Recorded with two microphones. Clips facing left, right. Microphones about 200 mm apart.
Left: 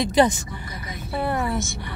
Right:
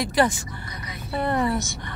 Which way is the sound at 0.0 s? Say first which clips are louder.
Left 3 dB; 20° left (ahead or behind).